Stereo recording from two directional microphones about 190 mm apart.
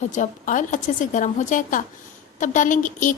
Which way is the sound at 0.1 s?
40° left (ahead or behind).